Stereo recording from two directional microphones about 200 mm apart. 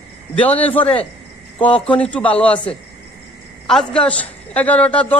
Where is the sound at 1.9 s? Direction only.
5° left (ahead or behind).